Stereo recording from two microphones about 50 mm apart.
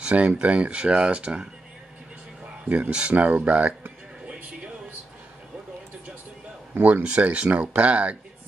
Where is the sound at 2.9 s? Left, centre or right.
Right.